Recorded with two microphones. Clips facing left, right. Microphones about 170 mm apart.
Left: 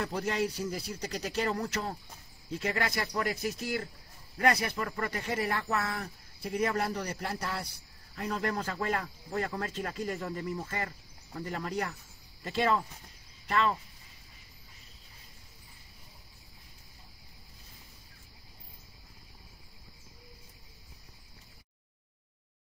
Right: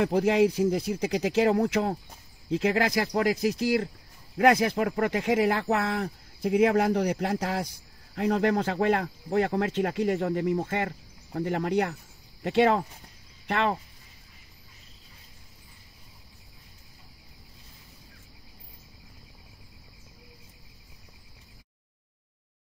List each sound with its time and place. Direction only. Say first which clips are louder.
0.0 s a man's voice: right 10 dB; 65° right (ahead or behind)
2.5 s a man's voice: right 8 dB; 80° right
5.0 s a man's voice: right 10 dB; 80° right; by 13.7 s 65° right (ahead or behind)